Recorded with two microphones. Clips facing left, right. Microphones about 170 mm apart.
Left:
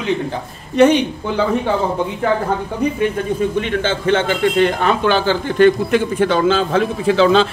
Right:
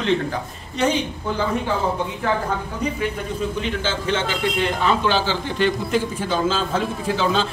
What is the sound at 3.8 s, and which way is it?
A man's voice, 55° left (ahead or behind).